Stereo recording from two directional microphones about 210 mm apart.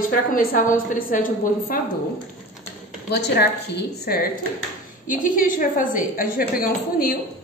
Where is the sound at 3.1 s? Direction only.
50° left (ahead or behind).